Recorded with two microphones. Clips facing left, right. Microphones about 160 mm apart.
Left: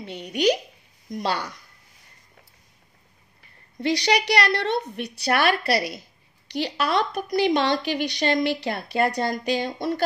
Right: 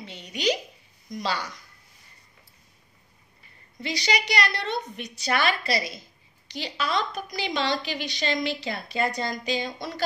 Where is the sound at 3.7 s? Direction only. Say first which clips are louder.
Left 6 dB; 65° left (ahead or behind).